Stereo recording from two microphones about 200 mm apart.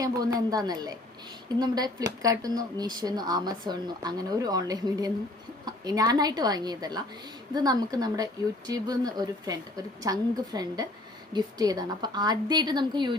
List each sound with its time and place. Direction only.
0.0 s speech: 20° right (ahead or behind)